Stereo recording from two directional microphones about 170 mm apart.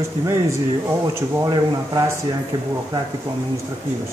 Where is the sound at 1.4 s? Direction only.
20° right (ahead or behind).